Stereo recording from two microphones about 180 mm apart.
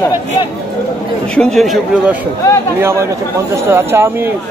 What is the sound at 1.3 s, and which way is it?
Speech, 5° left (ahead or behind).